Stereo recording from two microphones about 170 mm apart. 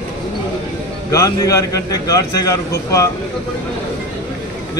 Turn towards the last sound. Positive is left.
turn(degrees=20)  # may be behind; listen again after turning